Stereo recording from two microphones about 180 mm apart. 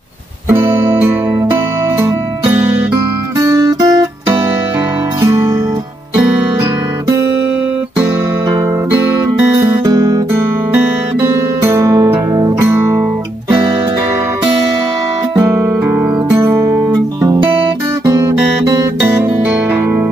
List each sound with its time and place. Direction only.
2.0 s music: 10° right (ahead or behind)
9.4 s music: 20° right (ahead or behind)
11.2 s music: 15° right (ahead or behind)
15.3 s music: 15° right (ahead or behind)
17.2 s guitar: 15° right (ahead or behind)
18.0 s music: 15° right (ahead or behind)